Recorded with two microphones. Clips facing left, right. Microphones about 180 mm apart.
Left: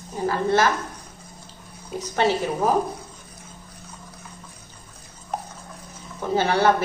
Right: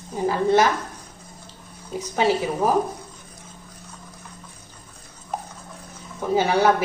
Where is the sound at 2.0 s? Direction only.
10° right (ahead or behind).